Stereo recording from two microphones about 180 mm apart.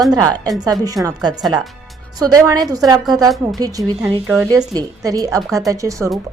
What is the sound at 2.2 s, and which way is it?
A woman's voice, 20° right (ahead or behind).